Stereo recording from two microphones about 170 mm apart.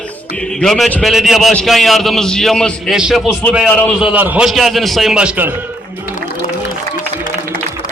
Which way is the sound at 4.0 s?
10° right (ahead or behind).